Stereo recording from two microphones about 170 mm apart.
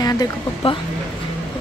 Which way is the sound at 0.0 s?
20° left (ahead or behind).